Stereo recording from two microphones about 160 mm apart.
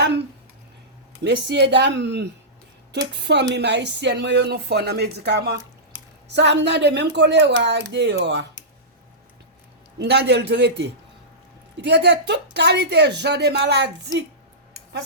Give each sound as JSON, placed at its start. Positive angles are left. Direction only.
{"t": 1.2, "sound": "speech", "side_deg": -90}
{"t": 10.0, "sound": "speech", "side_deg": -90}